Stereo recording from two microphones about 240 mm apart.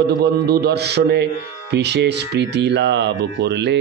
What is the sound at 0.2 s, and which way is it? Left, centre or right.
Speech, right.